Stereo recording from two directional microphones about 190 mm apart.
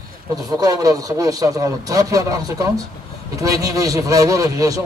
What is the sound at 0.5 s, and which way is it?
A man's voice, 20° right (ahead or behind).